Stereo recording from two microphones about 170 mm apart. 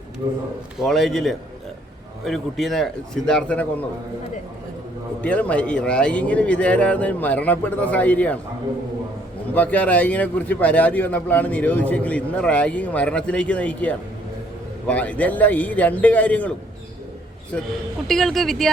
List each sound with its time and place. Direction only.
0.2 s a man's voice: 20° right (ahead or behind)
0.8 s speech: centre (ahead or behind)
5.2 s a man's voice: 10° left (ahead or behind)
9.6 s a man's voice: 10° left (ahead or behind)
18.1 s speech: centre (ahead or behind)